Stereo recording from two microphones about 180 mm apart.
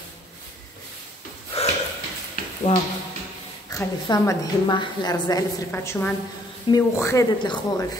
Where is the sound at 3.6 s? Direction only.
20° left (ahead or behind).